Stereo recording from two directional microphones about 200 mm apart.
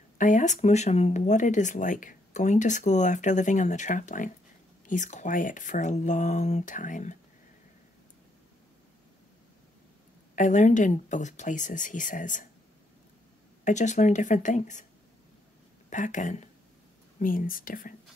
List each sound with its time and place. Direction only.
0.2 s speech: 40° left (ahead or behind)
10.3 s speech: 40° left (ahead or behind)
13.7 s speech: 35° left (ahead or behind)
15.9 s speech: 40° left (ahead or behind)